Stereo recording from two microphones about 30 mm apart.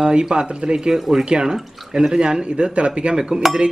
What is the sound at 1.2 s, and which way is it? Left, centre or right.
Speech, right.